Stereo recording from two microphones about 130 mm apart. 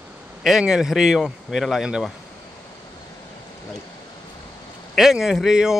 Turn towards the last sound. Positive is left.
turn(degrees=-5)  # may be behind; listen again after turning